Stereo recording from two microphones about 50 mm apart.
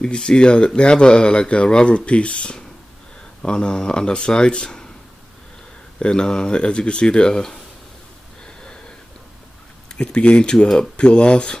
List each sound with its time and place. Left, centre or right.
0.0 s speech: centre
5.9 s speech: centre
9.9 s speech: left